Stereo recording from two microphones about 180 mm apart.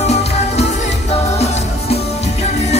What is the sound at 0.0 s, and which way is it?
Music, 35° left (ahead or behind).